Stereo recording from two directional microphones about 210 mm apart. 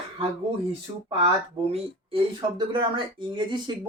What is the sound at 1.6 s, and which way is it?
Speech, 30° right (ahead or behind).